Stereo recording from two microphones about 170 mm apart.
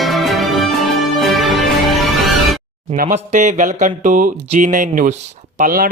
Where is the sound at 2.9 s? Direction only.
50° right (ahead or behind).